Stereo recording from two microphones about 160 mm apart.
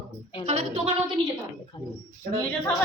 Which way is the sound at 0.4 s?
40° right (ahead or behind).